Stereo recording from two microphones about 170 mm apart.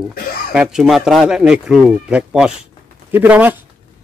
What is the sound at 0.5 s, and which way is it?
A man's voice, 5° right (ahead or behind).